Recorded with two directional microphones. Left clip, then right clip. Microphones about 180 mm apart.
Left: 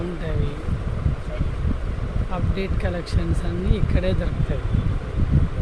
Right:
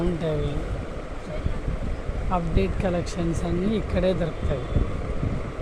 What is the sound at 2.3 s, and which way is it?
Speech, 15° right (ahead or behind).